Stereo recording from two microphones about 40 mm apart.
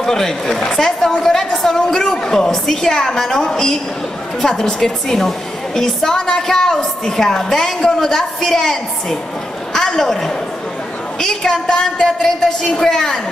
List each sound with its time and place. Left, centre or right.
0.0 s a woman's voice: centre